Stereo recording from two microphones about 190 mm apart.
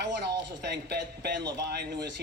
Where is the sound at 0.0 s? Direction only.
65° right (ahead or behind).